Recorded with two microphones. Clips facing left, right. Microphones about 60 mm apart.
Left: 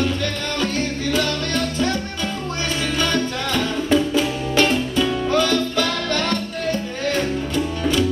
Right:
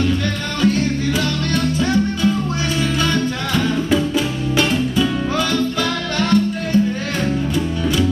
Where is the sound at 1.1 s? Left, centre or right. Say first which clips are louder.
Right 1 dB; centre.